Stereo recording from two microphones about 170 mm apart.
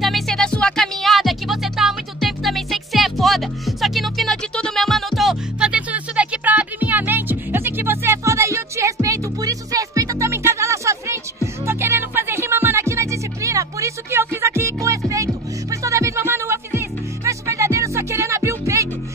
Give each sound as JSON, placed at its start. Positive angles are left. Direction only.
{"t": 0.0, "sound": "music", "side_deg": 0}